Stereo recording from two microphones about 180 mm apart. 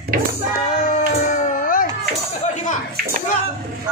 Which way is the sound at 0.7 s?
45° left (ahead or behind).